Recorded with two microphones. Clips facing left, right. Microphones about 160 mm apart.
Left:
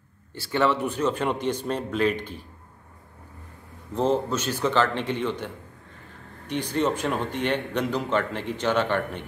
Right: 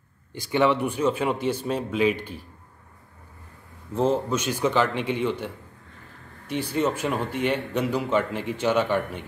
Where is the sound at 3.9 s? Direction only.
10° right (ahead or behind).